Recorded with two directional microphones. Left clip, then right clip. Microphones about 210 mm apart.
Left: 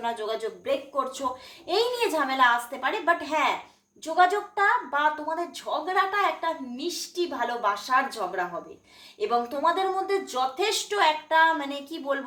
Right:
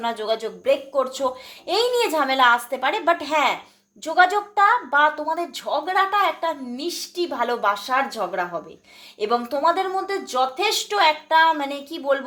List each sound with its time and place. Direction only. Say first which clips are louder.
0.0 s a woman's voice: right 5 dB; 45° right (ahead or behind)